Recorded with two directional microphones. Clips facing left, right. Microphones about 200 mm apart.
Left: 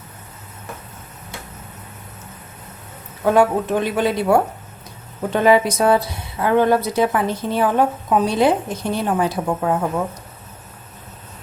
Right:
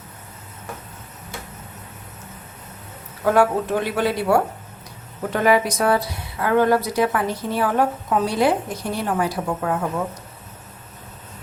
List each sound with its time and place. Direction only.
3.3 s a woman's voice: 20° left (ahead or behind)